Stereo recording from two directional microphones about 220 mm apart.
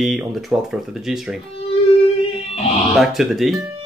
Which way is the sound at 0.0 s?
Centre (ahead or behind).